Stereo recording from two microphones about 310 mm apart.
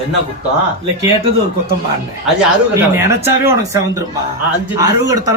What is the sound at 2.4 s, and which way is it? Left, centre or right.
Speech, centre.